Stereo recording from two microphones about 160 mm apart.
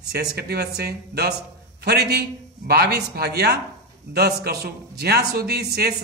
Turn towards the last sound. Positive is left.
turn(degrees=-80)